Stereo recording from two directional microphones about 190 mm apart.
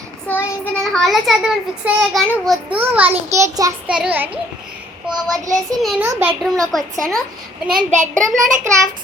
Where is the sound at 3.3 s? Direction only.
15° right (ahead or behind).